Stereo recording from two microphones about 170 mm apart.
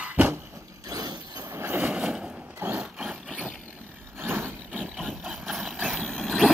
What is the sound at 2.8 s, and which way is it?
Vehicle, 5° right (ahead or behind).